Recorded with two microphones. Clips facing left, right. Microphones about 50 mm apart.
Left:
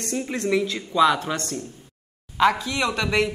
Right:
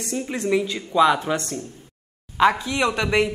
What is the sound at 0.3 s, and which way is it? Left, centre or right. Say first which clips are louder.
Speech: right 1 dB; centre.